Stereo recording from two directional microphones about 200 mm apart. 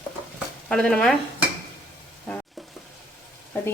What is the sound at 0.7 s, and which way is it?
Speech, 5° left (ahead or behind).